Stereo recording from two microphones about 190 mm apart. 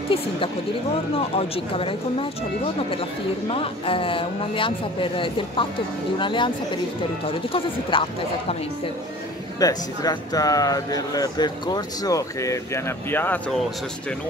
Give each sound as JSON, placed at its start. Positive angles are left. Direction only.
{"t": 1.1, "sound": "speech", "side_deg": 30}
{"t": 3.4, "sound": "speech", "side_deg": 30}
{"t": 7.9, "sound": "speech", "side_deg": 25}
{"t": 9.6, "sound": "speech", "side_deg": 20}